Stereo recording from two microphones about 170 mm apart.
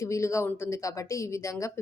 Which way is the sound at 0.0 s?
15° left (ahead or behind).